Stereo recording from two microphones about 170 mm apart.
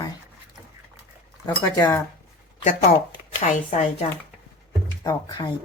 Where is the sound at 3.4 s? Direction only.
40° left (ahead or behind).